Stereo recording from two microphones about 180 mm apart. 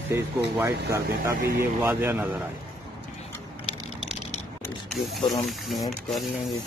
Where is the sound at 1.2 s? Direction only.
15° right (ahead or behind).